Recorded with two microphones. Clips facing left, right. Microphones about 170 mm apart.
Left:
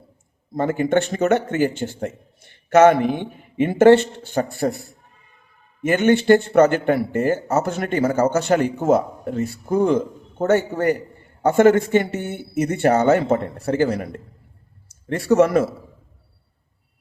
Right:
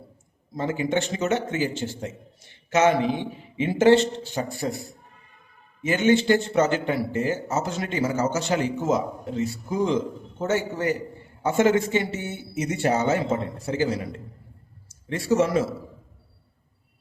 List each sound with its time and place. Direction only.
0.5 s speech: 55° left (ahead or behind)